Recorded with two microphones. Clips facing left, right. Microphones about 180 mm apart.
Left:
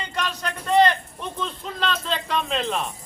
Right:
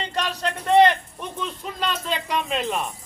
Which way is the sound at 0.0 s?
35° right (ahead or behind).